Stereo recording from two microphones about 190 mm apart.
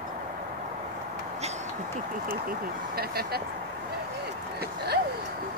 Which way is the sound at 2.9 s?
55° right (ahead or behind).